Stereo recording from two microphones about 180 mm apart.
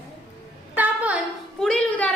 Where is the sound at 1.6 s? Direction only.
5° left (ahead or behind).